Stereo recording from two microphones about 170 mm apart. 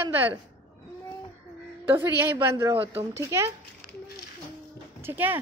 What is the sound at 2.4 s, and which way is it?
Speech, 15° right (ahead or behind).